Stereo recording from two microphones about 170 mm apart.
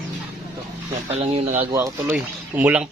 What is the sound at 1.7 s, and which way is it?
Speech, 15° right (ahead or behind).